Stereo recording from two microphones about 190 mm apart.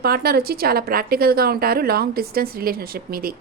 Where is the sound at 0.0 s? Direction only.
55° right (ahead or behind).